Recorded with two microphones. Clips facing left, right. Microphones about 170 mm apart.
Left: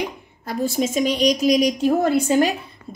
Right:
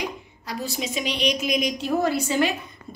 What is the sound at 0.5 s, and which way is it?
A woman's voice, 50° left (ahead or behind).